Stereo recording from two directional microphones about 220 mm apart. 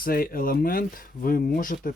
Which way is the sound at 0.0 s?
40° left (ahead or behind).